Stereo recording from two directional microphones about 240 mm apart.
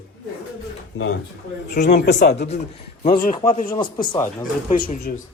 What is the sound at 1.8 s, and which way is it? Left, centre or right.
Speech, left.